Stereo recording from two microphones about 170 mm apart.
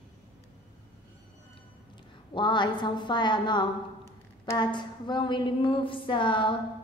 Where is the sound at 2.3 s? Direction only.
25° left (ahead or behind).